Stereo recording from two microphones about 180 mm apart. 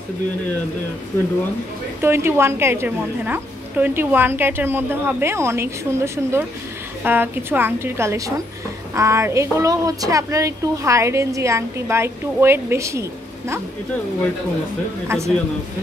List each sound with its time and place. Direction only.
2.0 s a woman's voice: 15° right (ahead or behind)
15.0 s a woman's voice: 15° right (ahead or behind)